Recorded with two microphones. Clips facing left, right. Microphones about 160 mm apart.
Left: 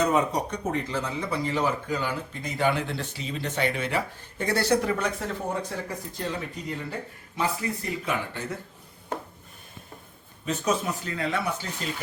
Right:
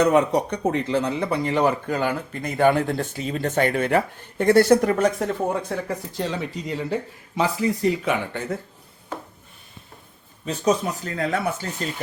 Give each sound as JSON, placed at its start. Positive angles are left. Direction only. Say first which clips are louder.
{"t": 0.0, "sound": "speech", "louder": "right 6 dB", "side_deg": -70}
{"t": 6.1, "sound": "speech", "louder": "right 4 dB", "side_deg": -90}
{"t": 10.4, "sound": "speech", "louder": "right 5 dB", "side_deg": -40}